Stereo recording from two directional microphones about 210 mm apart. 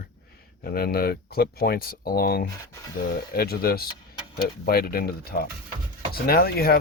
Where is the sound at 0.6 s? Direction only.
45° left (ahead or behind).